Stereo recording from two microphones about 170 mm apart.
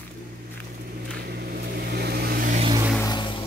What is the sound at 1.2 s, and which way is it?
Vehicle, 70° right (ahead or behind).